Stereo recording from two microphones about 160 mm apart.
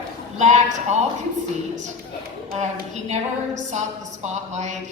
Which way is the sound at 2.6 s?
45° right (ahead or behind).